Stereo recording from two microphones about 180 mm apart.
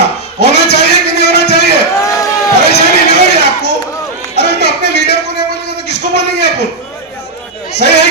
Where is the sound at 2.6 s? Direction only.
65° left (ahead or behind).